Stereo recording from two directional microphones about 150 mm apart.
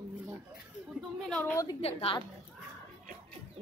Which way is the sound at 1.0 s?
5° left (ahead or behind).